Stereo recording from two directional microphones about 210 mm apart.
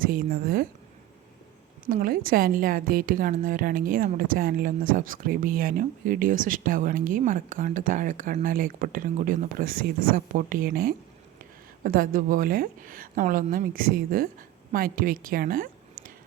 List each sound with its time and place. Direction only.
0.0 s a woman's voice: 45° right (ahead or behind)
1.9 s a woman's voice: 45° right (ahead or behind)